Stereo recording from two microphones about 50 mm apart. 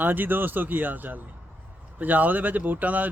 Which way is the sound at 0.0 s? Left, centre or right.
Right.